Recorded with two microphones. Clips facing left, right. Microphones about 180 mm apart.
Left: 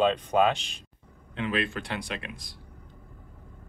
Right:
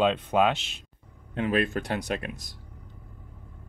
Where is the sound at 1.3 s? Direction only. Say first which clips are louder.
Right 4 dB; 45° right (ahead or behind).